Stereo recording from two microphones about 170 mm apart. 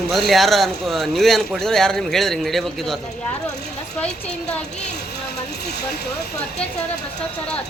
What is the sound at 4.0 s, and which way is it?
Speech, 10° left (ahead or behind).